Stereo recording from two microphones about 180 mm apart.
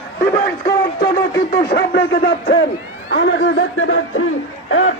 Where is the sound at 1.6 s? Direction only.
60° left (ahead or behind).